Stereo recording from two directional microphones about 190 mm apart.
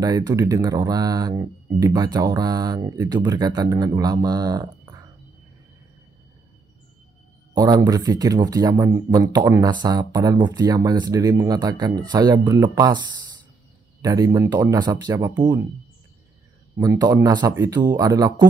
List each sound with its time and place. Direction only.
0.0 s speech: 20° right (ahead or behind)
7.5 s speech: 20° right (ahead or behind)
14.0 s speech: 20° right (ahead or behind)
16.7 s speech: 15° right (ahead or behind)